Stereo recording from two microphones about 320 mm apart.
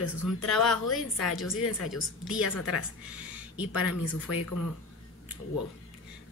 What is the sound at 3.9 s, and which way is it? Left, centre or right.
Speech, left.